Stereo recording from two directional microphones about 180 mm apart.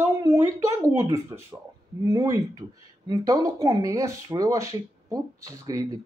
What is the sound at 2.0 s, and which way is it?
Speech, 20° right (ahead or behind).